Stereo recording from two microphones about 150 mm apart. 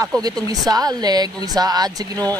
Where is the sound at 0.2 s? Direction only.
25° right (ahead or behind).